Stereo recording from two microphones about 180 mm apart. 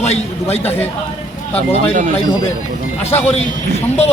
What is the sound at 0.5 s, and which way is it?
Speech, 35° left (ahead or behind).